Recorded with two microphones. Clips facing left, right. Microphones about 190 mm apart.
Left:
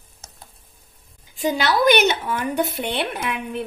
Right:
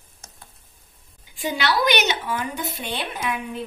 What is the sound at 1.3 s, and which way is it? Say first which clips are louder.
A woman's voice: left 3 dB; 40° left (ahead or behind).